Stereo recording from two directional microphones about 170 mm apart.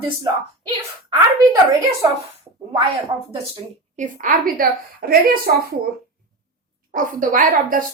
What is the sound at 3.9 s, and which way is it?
Speech, 50° right (ahead or behind).